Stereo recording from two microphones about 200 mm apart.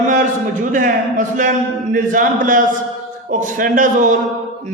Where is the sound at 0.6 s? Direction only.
40° right (ahead or behind).